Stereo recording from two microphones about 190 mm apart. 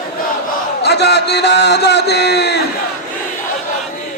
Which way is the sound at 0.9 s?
60° left (ahead or behind).